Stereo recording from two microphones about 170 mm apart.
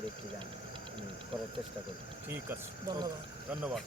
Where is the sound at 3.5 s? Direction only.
5° right (ahead or behind).